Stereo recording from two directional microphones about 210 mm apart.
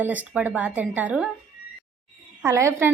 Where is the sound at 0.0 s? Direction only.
5° right (ahead or behind).